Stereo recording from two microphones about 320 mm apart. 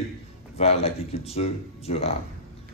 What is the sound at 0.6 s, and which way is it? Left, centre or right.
A man's voice, centre.